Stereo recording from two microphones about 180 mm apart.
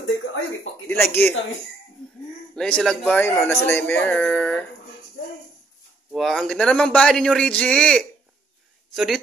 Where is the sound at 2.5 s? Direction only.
5° left (ahead or behind).